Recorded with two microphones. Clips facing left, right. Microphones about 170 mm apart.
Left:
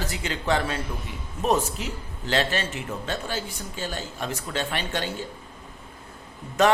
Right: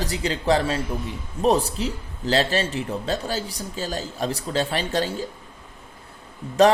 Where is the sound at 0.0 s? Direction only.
35° right (ahead or behind).